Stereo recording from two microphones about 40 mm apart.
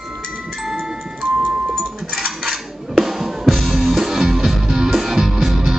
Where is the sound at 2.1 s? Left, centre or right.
Centre.